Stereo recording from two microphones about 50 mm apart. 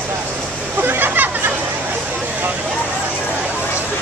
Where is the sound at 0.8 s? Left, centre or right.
Right.